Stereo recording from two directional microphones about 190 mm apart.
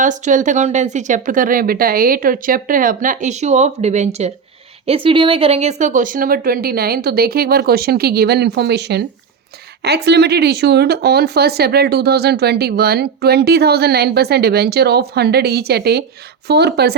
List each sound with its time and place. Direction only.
0.0 s speech: 40° right (ahead or behind); by 16.9 s 60° right (ahead or behind)